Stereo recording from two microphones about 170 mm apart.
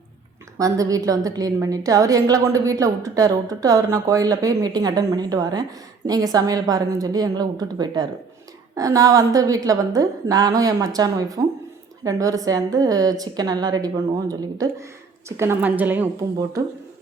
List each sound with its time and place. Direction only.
0.6 s a woman's voice: 20° right (ahead or behind)